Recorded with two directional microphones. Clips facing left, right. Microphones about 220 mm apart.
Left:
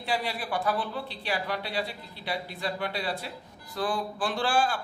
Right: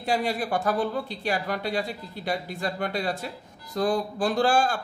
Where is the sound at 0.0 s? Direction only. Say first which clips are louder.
Right 5 dB; 45° right (ahead or behind).